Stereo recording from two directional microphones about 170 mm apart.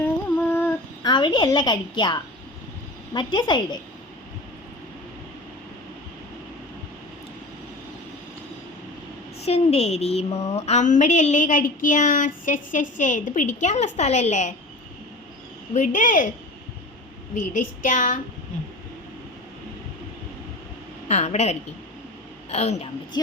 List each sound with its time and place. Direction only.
0.3 s a sound: 10° left (ahead or behind)
1.0 s a woman's voice: 25° left (ahead or behind)
9.5 s a woman's voice: 40° left (ahead or behind)
15.7 s a woman's voice: 50° left (ahead or behind)
17.3 s a woman's voice: 50° left (ahead or behind)
21.1 s a woman's voice: 40° left (ahead or behind)
23.1 s a woman's voice: 25° left (ahead or behind)